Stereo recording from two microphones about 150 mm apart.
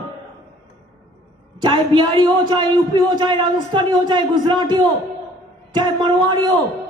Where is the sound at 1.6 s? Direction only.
30° right (ahead or behind).